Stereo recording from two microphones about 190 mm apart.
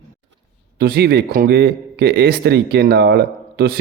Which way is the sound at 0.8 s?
55° right (ahead or behind).